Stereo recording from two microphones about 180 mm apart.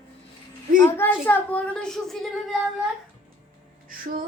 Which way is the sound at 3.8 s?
50° right (ahead or behind).